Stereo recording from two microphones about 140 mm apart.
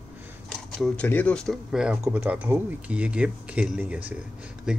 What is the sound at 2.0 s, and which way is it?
Speech, 15° right (ahead or behind).